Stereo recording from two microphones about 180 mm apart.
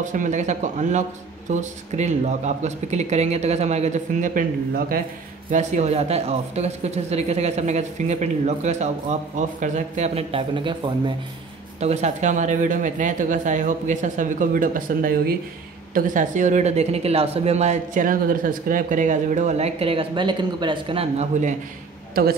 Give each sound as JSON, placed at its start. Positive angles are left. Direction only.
{"t": 0.0, "sound": "a woman's voice", "side_deg": -45}
{"t": 5.5, "sound": "a woman's voice", "side_deg": -40}
{"t": 11.8, "sound": "a woman's voice", "side_deg": -40}